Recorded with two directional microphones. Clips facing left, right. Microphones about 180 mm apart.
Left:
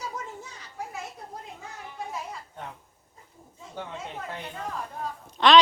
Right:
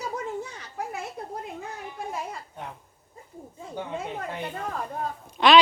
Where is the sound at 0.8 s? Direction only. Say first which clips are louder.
Right 4 dB; 65° right (ahead or behind).